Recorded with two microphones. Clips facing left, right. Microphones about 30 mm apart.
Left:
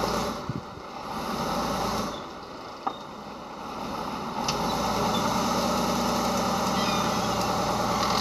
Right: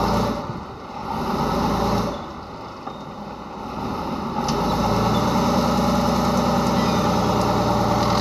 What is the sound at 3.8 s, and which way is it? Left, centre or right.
Vehicle, centre.